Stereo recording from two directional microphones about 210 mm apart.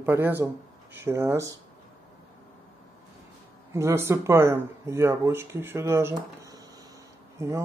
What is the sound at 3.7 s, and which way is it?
Speech, 15° right (ahead or behind).